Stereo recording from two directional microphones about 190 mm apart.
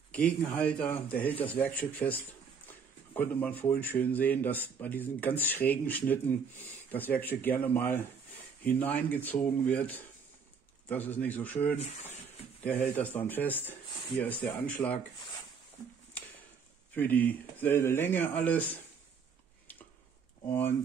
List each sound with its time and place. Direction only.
0.1 s speech: 5° left (ahead or behind)
16.9 s speech: 10° left (ahead or behind)